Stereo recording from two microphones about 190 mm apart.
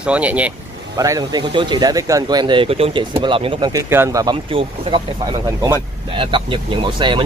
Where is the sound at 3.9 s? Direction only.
15° right (ahead or behind).